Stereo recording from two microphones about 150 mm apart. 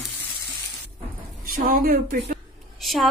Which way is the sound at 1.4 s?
70° right (ahead or behind).